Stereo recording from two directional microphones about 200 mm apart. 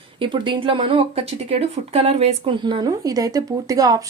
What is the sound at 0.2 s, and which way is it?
Speech, 25° right (ahead or behind).